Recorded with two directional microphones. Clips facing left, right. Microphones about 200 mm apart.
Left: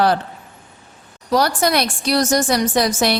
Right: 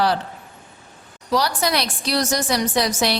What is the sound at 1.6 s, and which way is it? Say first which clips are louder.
Speech: left 4 dB; 50° left (ahead or behind).